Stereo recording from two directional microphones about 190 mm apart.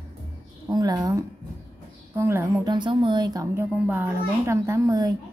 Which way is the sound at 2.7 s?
25° right (ahead or behind).